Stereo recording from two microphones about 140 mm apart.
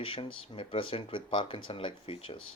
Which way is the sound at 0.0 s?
40° left (ahead or behind).